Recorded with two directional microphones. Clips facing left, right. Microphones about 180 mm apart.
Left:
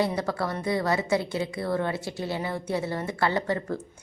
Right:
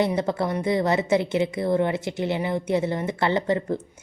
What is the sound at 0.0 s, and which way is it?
A woman's voice, 20° right (ahead or behind).